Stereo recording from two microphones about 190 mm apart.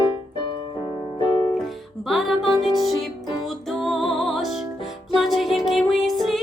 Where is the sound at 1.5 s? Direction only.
Centre (ahead or behind).